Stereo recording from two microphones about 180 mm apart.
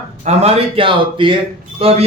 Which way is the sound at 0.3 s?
35° right (ahead or behind).